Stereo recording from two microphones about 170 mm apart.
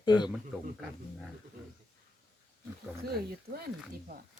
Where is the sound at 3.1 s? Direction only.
60° right (ahead or behind).